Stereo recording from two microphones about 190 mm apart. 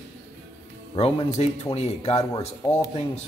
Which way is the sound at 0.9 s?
30° left (ahead or behind).